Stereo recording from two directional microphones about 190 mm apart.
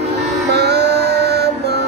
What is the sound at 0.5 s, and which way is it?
Music, 60° right (ahead or behind).